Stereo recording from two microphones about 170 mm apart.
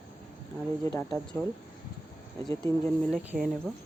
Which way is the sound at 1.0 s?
5° left (ahead or behind).